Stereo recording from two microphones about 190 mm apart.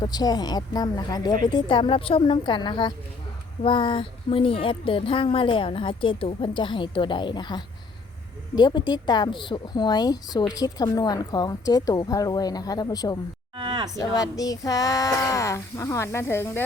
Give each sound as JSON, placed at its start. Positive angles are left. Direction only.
{"t": 0.0, "sound": "a woman's voice", "side_deg": 20}
{"t": 13.6, "sound": "cattle", "side_deg": -25}
{"t": 14.0, "sound": "speech", "side_deg": 20}